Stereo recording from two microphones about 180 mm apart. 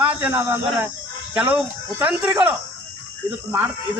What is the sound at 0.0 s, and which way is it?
A man's voice, 10° right (ahead or behind).